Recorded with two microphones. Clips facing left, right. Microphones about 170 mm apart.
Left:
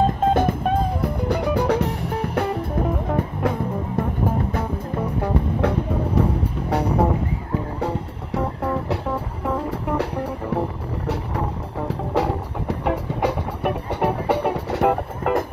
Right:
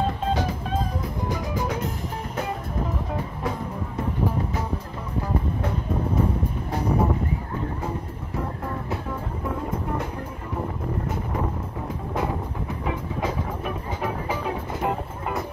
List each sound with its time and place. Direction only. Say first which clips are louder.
0.0 s music: left 7 dB; 50° left (ahead or behind)
5.2 s music: left 4 dB; 65° left (ahead or behind)
6.7 s vehicle: left 4 dB; 70° left (ahead or behind)
7.8 s music: left 5 dB; 70° left (ahead or behind)
11.9 s music: left 5 dB; 75° left (ahead or behind)